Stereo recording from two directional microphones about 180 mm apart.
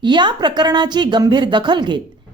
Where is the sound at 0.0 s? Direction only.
25° right (ahead or behind).